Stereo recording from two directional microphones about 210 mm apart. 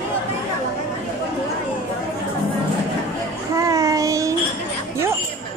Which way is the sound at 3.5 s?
15° right (ahead or behind).